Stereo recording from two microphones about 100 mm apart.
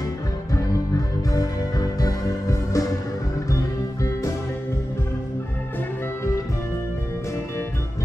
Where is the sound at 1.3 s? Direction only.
40° left (ahead or behind).